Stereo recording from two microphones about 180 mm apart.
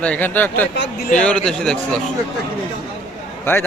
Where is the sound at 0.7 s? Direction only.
75° left (ahead or behind).